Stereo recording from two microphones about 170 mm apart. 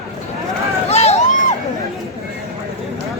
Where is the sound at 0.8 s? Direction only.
40° left (ahead or behind).